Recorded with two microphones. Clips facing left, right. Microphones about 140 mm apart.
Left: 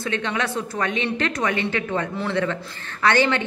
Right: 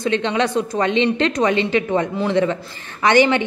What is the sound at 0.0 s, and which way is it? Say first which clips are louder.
A woman's voice: right 6 dB; 20° right (ahead or behind).